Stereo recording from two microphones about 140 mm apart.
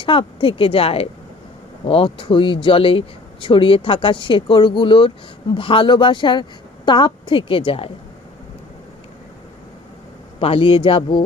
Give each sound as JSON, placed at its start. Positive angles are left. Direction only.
{"t": 0.0, "sound": "speech", "side_deg": 35}
{"t": 10.4, "sound": "speech", "side_deg": 40}